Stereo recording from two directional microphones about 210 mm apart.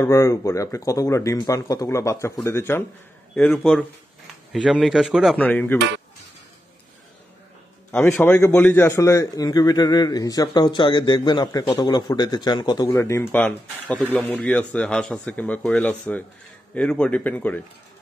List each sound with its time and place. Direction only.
0.0 s a man's voice: 15° left (ahead or behind)
7.9 s a man's voice: 10° left (ahead or behind)